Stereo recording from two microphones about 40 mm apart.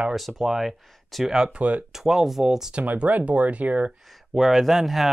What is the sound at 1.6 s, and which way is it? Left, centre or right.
Speech, right.